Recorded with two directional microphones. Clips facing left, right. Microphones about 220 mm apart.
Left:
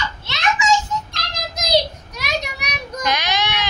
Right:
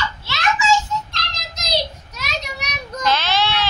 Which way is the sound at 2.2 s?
15° left (ahead or behind).